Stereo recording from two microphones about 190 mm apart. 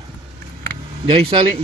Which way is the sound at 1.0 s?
30° right (ahead or behind).